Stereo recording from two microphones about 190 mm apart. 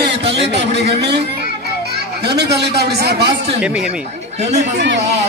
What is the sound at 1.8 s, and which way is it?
A child's voice, 60° right (ahead or behind).